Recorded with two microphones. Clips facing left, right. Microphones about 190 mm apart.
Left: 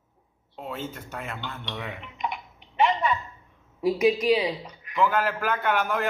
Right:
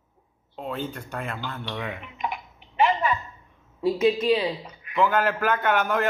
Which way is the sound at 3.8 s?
15° left (ahead or behind).